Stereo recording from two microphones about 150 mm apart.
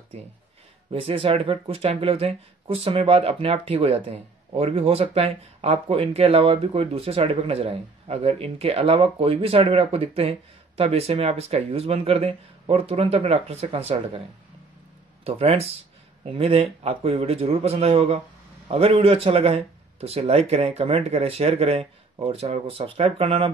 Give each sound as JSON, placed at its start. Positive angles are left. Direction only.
{"t": 0.9, "sound": "speech", "side_deg": -40}
{"t": 15.2, "sound": "speech", "side_deg": -40}